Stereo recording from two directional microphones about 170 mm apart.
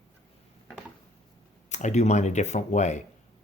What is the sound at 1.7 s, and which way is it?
Speech, 45° left (ahead or behind).